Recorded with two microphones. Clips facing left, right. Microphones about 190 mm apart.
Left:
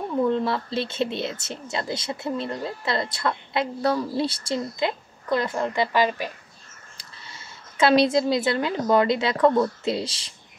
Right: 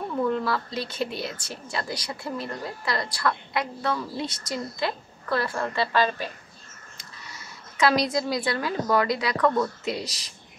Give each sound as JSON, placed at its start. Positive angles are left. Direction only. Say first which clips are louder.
{"t": 0.2, "sound": "speech", "louder": "left 3 dB", "side_deg": 25}
{"t": 3.8, "sound": "speech", "louder": "left 5 dB", "side_deg": 35}
{"t": 7.0, "sound": "a woman's voice", "louder": "right 1 dB", "side_deg": 25}